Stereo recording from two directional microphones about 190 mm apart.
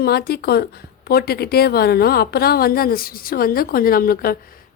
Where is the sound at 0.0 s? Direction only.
55° left (ahead or behind).